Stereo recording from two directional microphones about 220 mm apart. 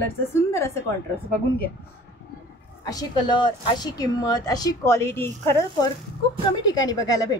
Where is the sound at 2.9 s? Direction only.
20° left (ahead or behind).